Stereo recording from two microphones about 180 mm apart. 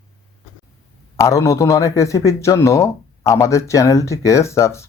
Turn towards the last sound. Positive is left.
turn(degrees=15)  # may be behind; listen again after turning